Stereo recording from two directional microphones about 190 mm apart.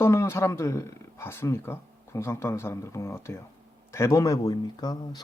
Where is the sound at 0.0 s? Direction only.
15° left (ahead or behind).